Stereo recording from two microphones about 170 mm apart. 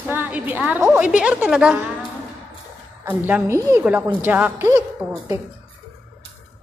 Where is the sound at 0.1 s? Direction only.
10° right (ahead or behind).